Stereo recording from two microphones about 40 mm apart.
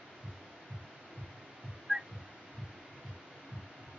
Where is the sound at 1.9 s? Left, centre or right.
Right.